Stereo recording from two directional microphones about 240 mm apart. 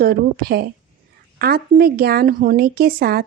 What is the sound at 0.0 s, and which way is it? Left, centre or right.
A woman's voice, right.